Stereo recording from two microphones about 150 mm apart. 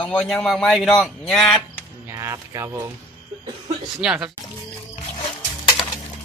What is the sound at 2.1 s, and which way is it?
Speech, 20° right (ahead or behind).